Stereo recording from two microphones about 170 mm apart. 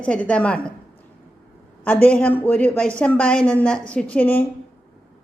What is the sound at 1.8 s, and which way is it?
A woman's voice, 10° left (ahead or behind).